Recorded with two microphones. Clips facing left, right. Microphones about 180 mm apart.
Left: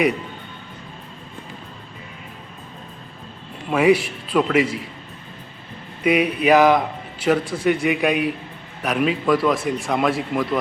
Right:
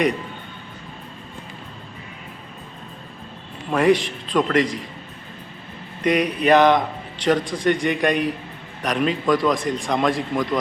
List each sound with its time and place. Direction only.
3.7 s a man's voice: 5° left (ahead or behind)
6.0 s a man's voice: 5° left (ahead or behind)